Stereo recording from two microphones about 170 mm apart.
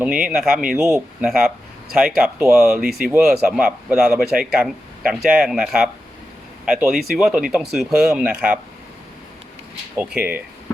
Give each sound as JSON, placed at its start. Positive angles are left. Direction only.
{"t": 0.0, "sound": "speech", "side_deg": -5}
{"t": 0.8, "sound": "speech", "side_deg": -15}
{"t": 1.2, "sound": "speech", "side_deg": -5}
{"t": 10.0, "sound": "speech", "side_deg": -10}